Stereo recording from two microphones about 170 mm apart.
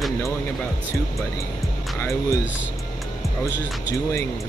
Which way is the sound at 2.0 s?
15° left (ahead or behind).